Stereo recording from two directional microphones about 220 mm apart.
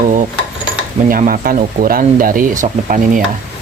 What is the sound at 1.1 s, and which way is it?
Speech, 40° right (ahead or behind).